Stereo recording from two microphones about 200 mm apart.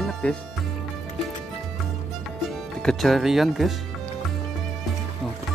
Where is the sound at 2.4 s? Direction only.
Centre (ahead or behind).